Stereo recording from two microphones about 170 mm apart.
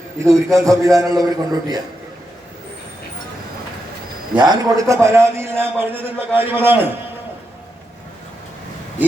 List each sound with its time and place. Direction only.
0.3 s a man's voice: 20° right (ahead or behind)
4.4 s a man's voice: 25° right (ahead or behind)